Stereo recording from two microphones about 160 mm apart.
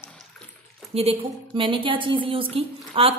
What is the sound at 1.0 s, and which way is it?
A woman's voice, 35° right (ahead or behind).